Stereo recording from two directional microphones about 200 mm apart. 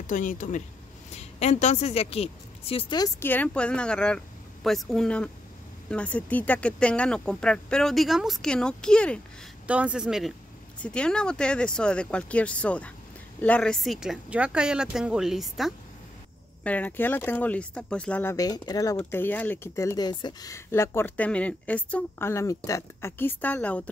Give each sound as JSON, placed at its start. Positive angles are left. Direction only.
{"t": 0.0, "sound": "a woman's voice", "side_deg": 40}
{"t": 3.2, "sound": "speech", "side_deg": 10}
{"t": 9.7, "sound": "speech", "side_deg": -5}
{"t": 18.3, "sound": "speech", "side_deg": 20}